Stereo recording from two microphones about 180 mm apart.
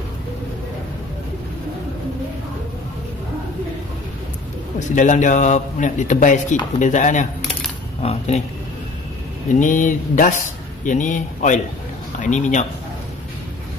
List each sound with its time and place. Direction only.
4.7 s a man's voice: 45° left (ahead or behind)
9.6 s a man's voice: 45° left (ahead or behind)